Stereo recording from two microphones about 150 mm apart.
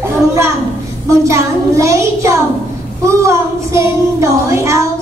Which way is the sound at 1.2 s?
20° right (ahead or behind).